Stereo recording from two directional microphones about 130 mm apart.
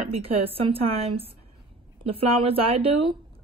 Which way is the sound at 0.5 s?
45° right (ahead or behind).